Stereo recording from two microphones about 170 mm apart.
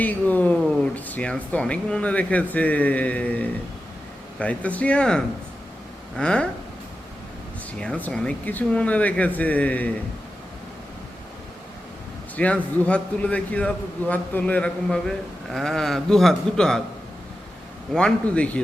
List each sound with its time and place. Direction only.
0.0 s a man's voice: 10° left (ahead or behind)
7.8 s speech: 5° left (ahead or behind)
12.4 s a man's voice: 10° left (ahead or behind)
17.9 s speech: 5° left (ahead or behind)